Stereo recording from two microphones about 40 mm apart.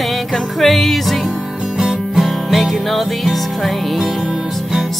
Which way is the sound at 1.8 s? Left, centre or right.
Centre.